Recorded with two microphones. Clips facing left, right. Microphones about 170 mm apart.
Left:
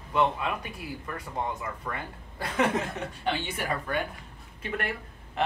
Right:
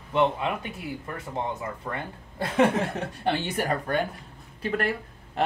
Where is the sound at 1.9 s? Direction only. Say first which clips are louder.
Right 2 dB; 25° right (ahead or behind).